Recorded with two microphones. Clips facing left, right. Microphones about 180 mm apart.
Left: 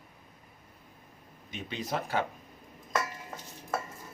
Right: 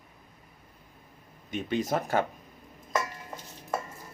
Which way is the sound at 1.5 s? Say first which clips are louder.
Right 7 dB; 50° right (ahead or behind).